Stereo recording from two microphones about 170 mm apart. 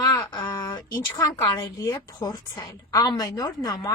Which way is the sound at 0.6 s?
15° left (ahead or behind).